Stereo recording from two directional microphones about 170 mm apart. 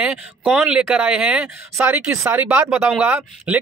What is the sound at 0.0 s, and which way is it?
Speech, 5° right (ahead or behind).